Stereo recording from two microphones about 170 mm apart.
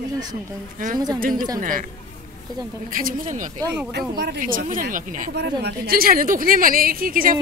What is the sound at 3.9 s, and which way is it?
Speech, 80° right.